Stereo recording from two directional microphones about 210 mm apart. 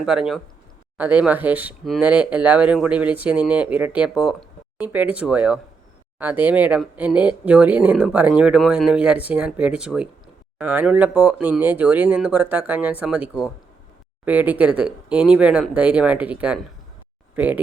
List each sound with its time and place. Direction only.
0.0 s speech: centre (ahead or behind)